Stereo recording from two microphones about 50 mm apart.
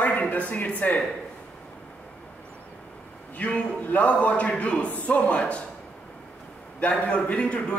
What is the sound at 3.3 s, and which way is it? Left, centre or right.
A man's voice, left.